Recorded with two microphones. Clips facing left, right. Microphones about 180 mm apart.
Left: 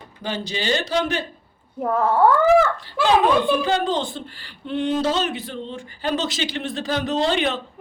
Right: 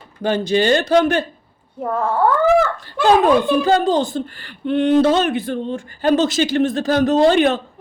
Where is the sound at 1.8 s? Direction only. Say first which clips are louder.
Even; 5° left (ahead or behind).